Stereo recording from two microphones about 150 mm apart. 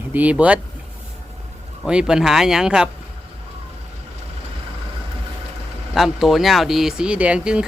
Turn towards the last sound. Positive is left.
turn(degrees=-5)  # may be behind; listen again after turning